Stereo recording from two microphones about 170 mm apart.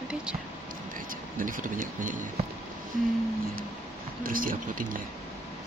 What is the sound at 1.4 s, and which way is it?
Speech, 50° right (ahead or behind).